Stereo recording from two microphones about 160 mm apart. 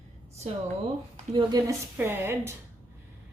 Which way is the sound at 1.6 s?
15° right (ahead or behind).